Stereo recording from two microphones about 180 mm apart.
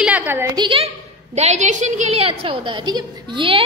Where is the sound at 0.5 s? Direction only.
30° right (ahead or behind).